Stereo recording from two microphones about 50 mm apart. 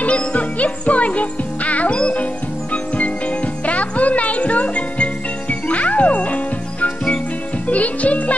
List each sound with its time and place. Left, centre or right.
0.0 s music: left
3.6 s music: left